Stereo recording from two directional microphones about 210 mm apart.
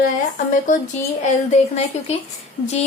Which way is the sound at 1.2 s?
30° left (ahead or behind).